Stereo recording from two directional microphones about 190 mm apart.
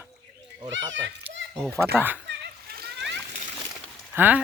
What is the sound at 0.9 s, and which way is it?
Speech, 70° right (ahead or behind).